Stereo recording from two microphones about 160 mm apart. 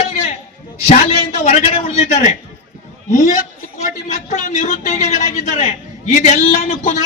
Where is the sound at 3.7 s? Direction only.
45° left (ahead or behind).